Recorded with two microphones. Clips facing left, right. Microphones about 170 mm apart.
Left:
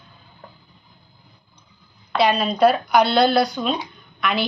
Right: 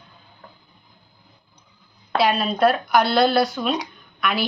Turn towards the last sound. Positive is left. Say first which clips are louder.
# left 1 dB
turn(degrees=0)  # may be behind; listen again after turning